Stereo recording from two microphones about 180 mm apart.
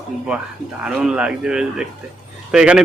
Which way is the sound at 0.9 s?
5° right (ahead or behind).